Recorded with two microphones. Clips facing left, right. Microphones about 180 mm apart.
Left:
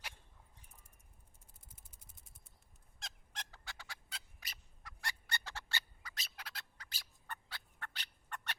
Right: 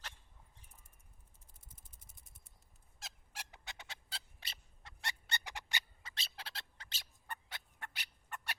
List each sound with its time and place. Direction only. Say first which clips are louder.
3.0 s fowl: left 1 dB; 10° right (ahead or behind)
3.6 s a sound: right 1 dB; 20° right (ahead or behind)
7.3 s turkey: right 1 dB; 15° right (ahead or behind)